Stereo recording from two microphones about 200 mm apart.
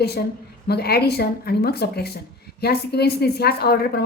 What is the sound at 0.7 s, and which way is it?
A woman's voice, 50° left (ahead or behind).